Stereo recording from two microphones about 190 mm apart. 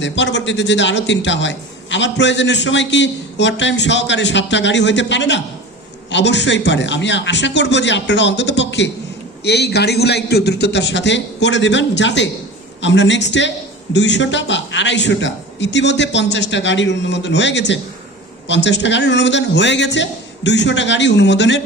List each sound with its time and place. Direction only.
0.0 s a man's voice: 70° left (ahead or behind)